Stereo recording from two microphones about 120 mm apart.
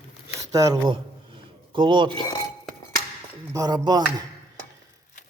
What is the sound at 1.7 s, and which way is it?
Speech, 40° right (ahead or behind).